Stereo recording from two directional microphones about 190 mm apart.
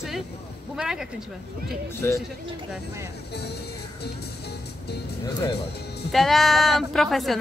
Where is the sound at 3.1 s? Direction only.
60° left (ahead or behind).